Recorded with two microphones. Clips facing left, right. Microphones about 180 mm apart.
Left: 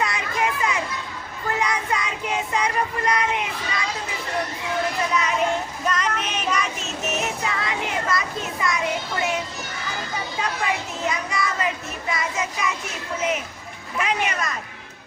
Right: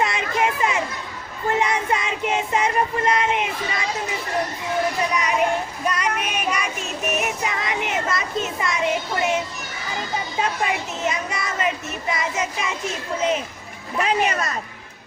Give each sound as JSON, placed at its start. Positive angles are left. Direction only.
{"t": 0.0, "sound": "children playing", "side_deg": -25}
{"t": 1.5, "sound": "child singing", "side_deg": -25}
{"t": 5.8, "sound": "child singing", "side_deg": -10}
{"t": 10.6, "sound": "a sound", "side_deg": -20}
{"t": 12.1, "sound": "child singing", "side_deg": -25}
{"t": 14.0, "sound": "speech", "side_deg": -35}